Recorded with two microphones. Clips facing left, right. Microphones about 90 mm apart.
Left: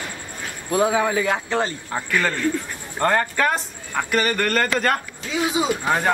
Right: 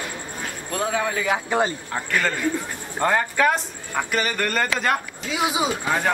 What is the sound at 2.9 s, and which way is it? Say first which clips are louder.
A man's voice: left 1 dB; 5° right (ahead or behind).